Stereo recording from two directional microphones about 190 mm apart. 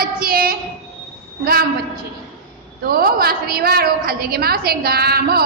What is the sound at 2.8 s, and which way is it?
A woman's voice, 50° right (ahead or behind).